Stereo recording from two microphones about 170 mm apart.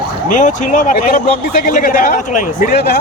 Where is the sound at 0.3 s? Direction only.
45° left (ahead or behind).